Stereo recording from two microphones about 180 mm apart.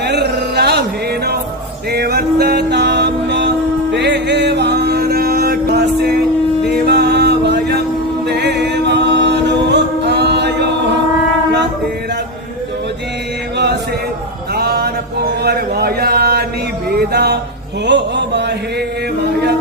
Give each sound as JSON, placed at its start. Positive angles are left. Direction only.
{"t": 0.0, "sound": "music", "side_deg": -65}
{"t": 8.3, "sound": "a capella", "side_deg": -70}
{"t": 14.5, "sound": "a sound", "side_deg": -60}
{"t": 17.8, "sound": "mantra", "side_deg": -75}
{"t": 19.2, "sound": "music", "side_deg": -65}